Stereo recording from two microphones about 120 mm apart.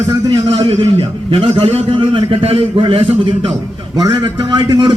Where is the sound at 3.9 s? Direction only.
35° right (ahead or behind).